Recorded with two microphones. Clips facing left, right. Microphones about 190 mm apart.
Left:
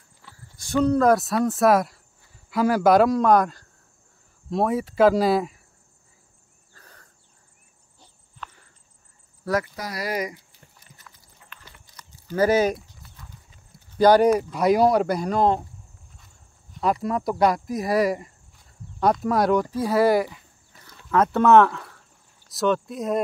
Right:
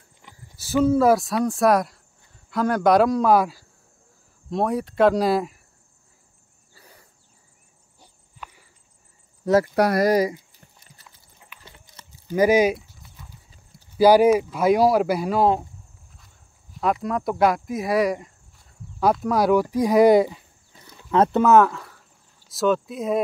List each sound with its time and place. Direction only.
0.2 s a sound: 15° right (ahead or behind)
0.6 s speech: 5° right (ahead or behind)
6.7 s a sound: 10° right (ahead or behind)
9.4 s speech: 25° right (ahead or behind)
9.8 s speech: 60° right (ahead or behind)
10.0 s speech: 35° right (ahead or behind)
11.6 s clip-clop: 20° right (ahead or behind)
12.3 s speech: 10° right (ahead or behind)
13.9 s speech: 10° right (ahead or behind)
16.7 s speech: centre (ahead or behind); by 21.4 s 20° right (ahead or behind)
21.4 s speech: 5° right (ahead or behind)